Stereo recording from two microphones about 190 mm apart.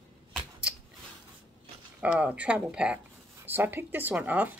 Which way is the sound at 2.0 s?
5° right (ahead or behind).